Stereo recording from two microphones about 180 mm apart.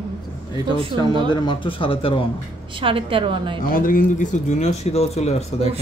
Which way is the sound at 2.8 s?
30° right (ahead or behind).